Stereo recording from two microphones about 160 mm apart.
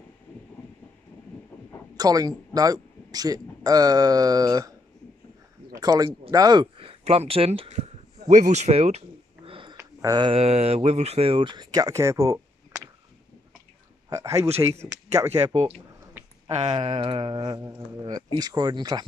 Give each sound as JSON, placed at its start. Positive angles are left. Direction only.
{"t": 2.0, "sound": "a man's voice", "side_deg": -25}
{"t": 5.7, "sound": "a sound", "side_deg": -25}
{"t": 6.3, "sound": "speech", "side_deg": -25}
{"t": 8.3, "sound": "speech", "side_deg": -45}
{"t": 9.5, "sound": "a sound", "side_deg": -30}
{"t": 9.8, "sound": "speech", "side_deg": -25}
{"t": 14.0, "sound": "speech", "side_deg": -20}
{"t": 16.5, "sound": "speech", "side_deg": -30}